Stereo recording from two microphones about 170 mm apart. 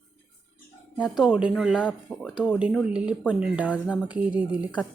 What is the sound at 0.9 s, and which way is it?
Speech, 5° right (ahead or behind).